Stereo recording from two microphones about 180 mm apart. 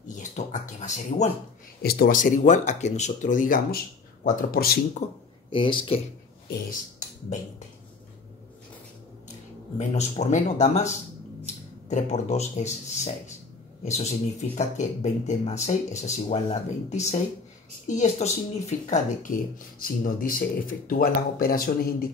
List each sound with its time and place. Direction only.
0.1 s a sound: 45° left (ahead or behind)
1.8 s speech: 60° left (ahead or behind)
5.5 s speech: 25° left (ahead or behind)
6.5 s speech: 45° left (ahead or behind)
9.8 s a man's voice: 40° left (ahead or behind)